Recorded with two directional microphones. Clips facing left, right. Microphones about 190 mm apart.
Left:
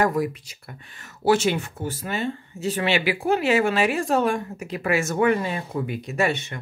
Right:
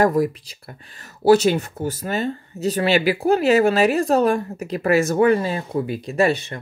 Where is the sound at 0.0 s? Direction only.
40° right (ahead or behind).